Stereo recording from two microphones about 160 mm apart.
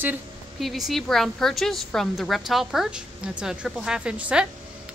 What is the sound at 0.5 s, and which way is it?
A woman's voice, centre (ahead or behind).